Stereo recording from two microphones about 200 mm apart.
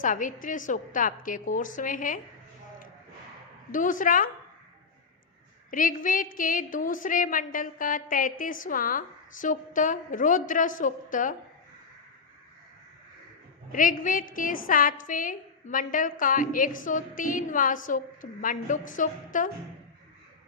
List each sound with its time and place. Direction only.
0.0 s a woman's voice: 40° left (ahead or behind)
3.7 s a woman's voice: 40° left (ahead or behind)
5.7 s a woman's voice: 40° left (ahead or behind)
13.7 s a woman's voice: 40° left (ahead or behind)